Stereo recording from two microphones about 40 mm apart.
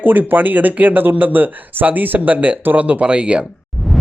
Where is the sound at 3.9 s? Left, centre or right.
Centre.